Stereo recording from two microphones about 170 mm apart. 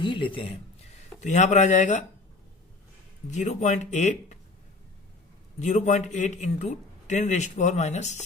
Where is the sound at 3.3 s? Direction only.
45° left (ahead or behind).